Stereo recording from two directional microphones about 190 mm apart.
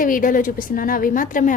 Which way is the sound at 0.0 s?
45° left (ahead or behind).